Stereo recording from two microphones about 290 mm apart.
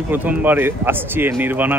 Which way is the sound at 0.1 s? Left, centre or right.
Centre.